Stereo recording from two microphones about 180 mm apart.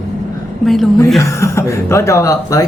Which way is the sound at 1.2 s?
15° left (ahead or behind).